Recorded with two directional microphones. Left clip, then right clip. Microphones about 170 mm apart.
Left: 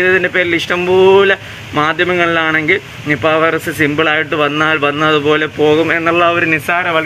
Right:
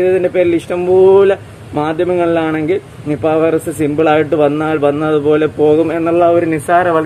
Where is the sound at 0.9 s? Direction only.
25° left (ahead or behind).